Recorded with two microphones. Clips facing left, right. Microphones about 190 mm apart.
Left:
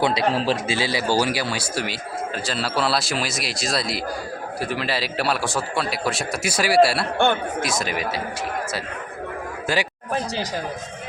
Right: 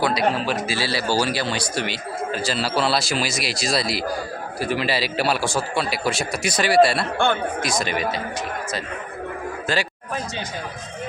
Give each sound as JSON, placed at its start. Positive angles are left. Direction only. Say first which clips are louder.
{"t": 0.0, "sound": "speech", "louder": "left 1 dB", "side_deg": 25}
{"t": 0.7, "sound": "speech", "louder": "left 1 dB", "side_deg": 15}
{"t": 9.7, "sound": "speech", "louder": "left 1 dB", "side_deg": 10}